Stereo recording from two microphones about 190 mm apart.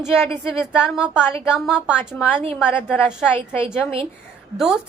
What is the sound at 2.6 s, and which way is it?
Speech, 10° left (ahead or behind).